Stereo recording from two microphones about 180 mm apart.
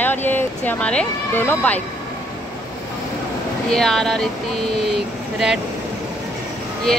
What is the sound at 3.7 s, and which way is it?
Speech, centre (ahead or behind).